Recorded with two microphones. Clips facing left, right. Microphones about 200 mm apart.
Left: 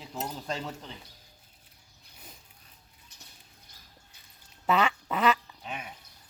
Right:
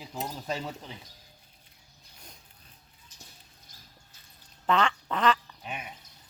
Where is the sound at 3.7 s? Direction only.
65° left (ahead or behind).